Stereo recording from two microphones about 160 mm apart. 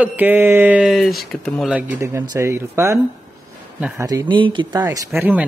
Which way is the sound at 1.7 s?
15° right (ahead or behind).